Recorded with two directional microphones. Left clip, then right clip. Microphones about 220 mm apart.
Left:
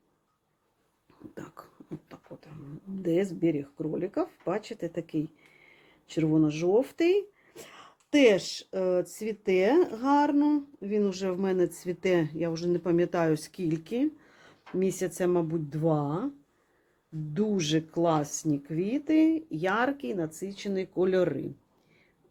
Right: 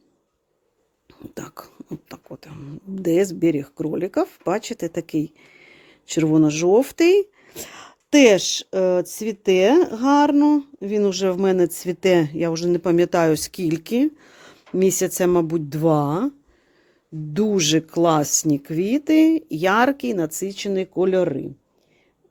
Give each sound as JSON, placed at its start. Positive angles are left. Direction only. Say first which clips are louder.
{"t": 1.0, "sound": "a sound", "louder": "right 9 dB", "side_deg": -45}
{"t": 3.0, "sound": "speech", "louder": "right 9 dB", "side_deg": -55}
{"t": 17.3, "sound": "speech", "louder": "right 9 dB", "side_deg": -50}